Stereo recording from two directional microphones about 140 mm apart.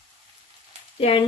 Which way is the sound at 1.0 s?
40° left (ahead or behind).